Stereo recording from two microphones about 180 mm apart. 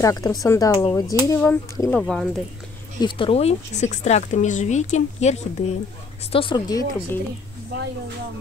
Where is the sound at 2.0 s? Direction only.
5° left (ahead or behind).